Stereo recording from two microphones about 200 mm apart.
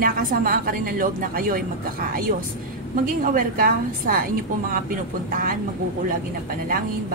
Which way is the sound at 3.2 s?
45° right (ahead or behind).